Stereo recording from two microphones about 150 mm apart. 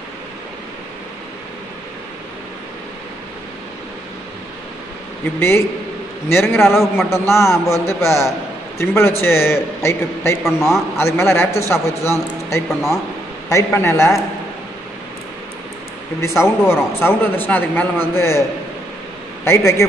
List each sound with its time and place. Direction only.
5.4 s a man's voice: 15° left (ahead or behind)
6.6 s a man's voice: centre (ahead or behind)
7.1 s a man's voice: 20° left (ahead or behind)
12.6 s a man's voice: centre (ahead or behind)
13.5 s a man's voice: 20° left (ahead or behind)
16.2 s a man's voice: 20° left (ahead or behind)
19.4 s a man's voice: 15° left (ahead or behind)